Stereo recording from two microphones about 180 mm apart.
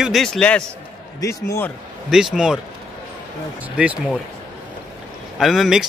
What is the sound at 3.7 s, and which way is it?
Speech, 5° right (ahead or behind).